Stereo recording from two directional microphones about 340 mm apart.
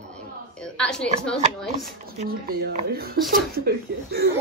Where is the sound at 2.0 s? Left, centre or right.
Right.